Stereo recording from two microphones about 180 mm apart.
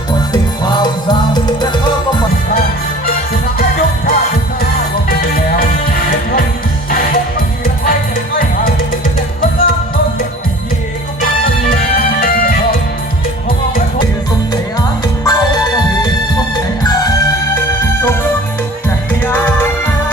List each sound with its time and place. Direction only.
0.6 s music: 25° left (ahead or behind)
3.6 s music: 55° left (ahead or behind)
11.2 s music: 55° left (ahead or behind)
14.5 s music: 20° left (ahead or behind)
19.2 s music: 10° left (ahead or behind)